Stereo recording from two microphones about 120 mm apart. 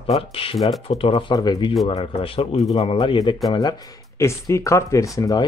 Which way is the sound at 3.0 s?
40° left (ahead or behind).